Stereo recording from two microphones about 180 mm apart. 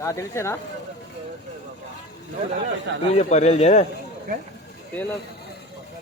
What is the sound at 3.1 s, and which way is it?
Speech, 40° left (ahead or behind).